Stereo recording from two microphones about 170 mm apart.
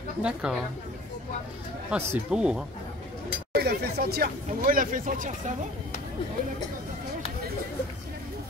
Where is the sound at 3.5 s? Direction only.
70° right (ahead or behind); by 5.5 s 50° right (ahead or behind).